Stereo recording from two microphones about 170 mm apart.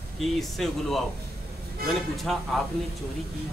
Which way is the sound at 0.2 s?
Centre (ahead or behind).